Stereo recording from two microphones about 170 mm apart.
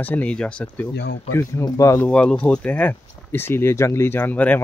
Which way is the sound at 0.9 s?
90° left.